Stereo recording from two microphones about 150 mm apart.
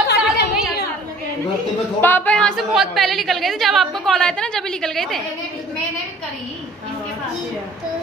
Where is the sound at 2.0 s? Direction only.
10° left (ahead or behind).